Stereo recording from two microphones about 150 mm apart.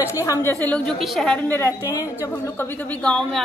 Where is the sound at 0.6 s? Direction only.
5° left (ahead or behind).